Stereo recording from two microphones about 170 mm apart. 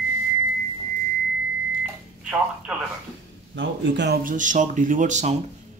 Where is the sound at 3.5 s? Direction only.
90° right.